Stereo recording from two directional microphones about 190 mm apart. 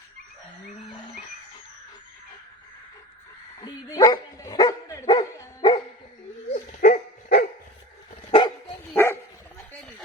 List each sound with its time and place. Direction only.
3.6 s dog: 20° left (ahead or behind)
6.5 s dog: 45° left (ahead or behind)
8.3 s dog: 25° left (ahead or behind)
8.9 s dog: 15° left (ahead or behind)